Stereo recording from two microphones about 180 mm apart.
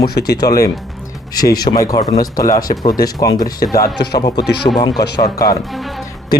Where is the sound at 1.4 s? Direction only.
20° left (ahead or behind).